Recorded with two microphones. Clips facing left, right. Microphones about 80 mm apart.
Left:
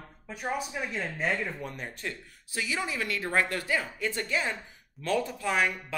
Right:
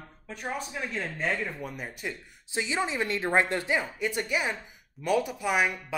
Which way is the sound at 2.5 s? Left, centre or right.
Right.